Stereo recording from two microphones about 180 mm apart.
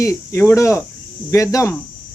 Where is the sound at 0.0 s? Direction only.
15° left (ahead or behind).